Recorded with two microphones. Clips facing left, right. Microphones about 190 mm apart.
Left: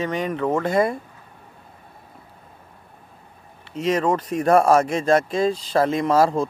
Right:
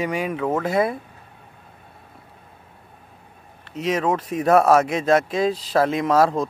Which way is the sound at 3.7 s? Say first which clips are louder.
Left 1 dB; centre (ahead or behind).